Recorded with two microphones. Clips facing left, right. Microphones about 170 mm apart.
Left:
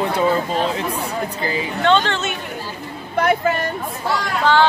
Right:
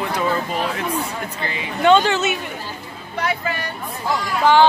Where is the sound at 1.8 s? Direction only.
10° right (ahead or behind).